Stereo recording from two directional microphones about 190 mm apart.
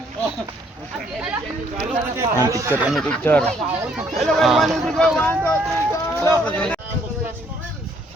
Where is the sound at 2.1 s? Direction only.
15° right (ahead or behind); by 6.8 s 5° left (ahead or behind).